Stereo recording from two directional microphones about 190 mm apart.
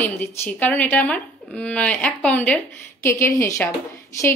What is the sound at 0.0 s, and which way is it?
Speech, 10° left (ahead or behind).